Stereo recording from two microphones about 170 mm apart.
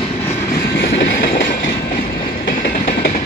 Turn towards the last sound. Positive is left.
turn(degrees=55)  # may be behind; listen again after turning